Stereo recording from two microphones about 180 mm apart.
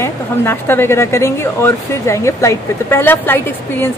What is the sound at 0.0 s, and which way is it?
A woman's voice, 10° left (ahead or behind).